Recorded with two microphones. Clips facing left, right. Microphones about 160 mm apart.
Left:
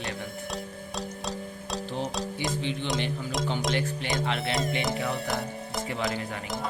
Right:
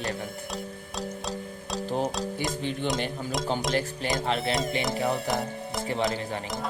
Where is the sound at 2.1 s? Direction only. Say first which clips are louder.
Right 1 dB; centre (ahead or behind).